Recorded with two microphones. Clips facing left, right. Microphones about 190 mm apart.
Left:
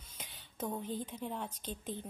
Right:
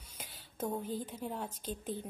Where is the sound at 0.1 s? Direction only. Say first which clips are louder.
Right 1 dB; 5° right (ahead or behind).